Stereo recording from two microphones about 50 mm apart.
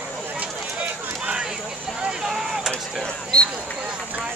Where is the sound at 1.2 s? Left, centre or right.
Centre.